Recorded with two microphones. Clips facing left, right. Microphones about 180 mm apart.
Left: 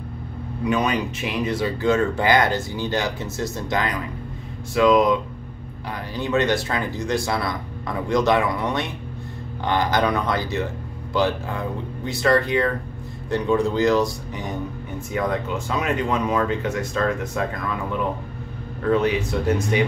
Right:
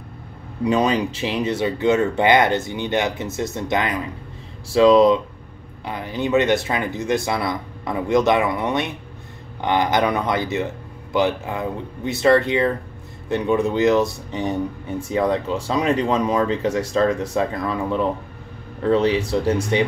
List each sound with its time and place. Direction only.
0.7 s speech: 30° right (ahead or behind)